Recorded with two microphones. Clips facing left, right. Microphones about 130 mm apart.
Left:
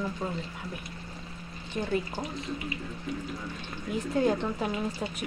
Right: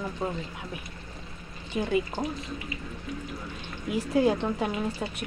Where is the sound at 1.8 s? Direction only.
5° right (ahead or behind).